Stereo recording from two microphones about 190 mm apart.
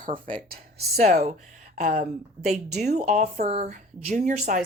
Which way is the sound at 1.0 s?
35° right (ahead or behind).